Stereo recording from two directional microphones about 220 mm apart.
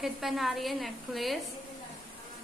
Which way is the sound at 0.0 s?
Centre (ahead or behind).